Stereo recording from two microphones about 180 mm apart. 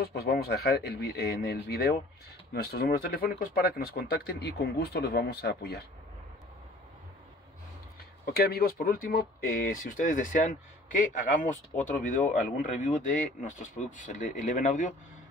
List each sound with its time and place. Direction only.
0.0 s speech: 60° left (ahead or behind)
8.3 s speech: 60° left (ahead or behind); by 15.0 s 45° left (ahead or behind)